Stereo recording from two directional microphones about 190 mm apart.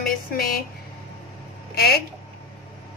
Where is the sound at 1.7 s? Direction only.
55° left (ahead or behind).